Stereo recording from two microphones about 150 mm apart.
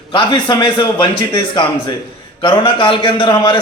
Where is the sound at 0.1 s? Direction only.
30° left (ahead or behind).